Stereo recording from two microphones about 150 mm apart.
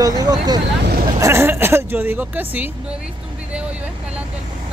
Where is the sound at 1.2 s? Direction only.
15° right (ahead or behind).